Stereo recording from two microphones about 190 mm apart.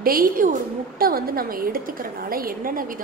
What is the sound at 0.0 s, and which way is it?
A woman's voice, 50° right (ahead or behind).